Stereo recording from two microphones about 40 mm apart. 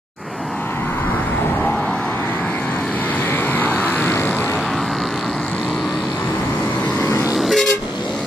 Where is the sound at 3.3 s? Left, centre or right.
Left.